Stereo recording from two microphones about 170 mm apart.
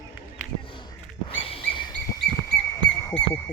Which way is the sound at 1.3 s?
30° left (ahead or behind).